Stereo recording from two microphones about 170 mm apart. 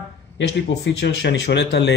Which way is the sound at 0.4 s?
85° left.